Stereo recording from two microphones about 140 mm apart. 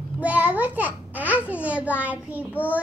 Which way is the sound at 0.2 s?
10° right (ahead or behind).